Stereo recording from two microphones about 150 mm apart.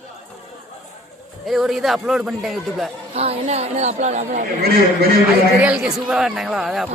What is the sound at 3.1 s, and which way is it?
Speech, 45° right (ahead or behind).